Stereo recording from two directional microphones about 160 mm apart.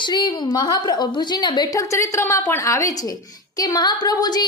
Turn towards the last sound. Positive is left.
turn(degrees=25)  # may be behind; listen again after turning